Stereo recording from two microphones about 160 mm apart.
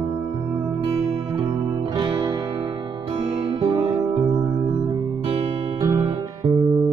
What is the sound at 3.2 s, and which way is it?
Music, 40° right (ahead or behind).